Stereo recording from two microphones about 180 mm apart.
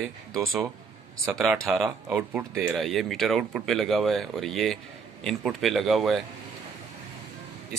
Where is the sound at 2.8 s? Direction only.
Centre (ahead or behind).